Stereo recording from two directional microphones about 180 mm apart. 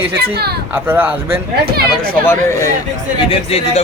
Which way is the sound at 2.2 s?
15° left (ahead or behind).